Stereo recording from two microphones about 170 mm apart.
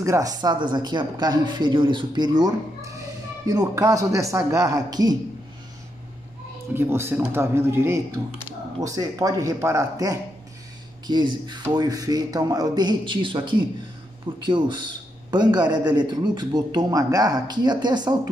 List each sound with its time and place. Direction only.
0.0 s speech: 20° right (ahead or behind)
6.7 s speech: 15° right (ahead or behind)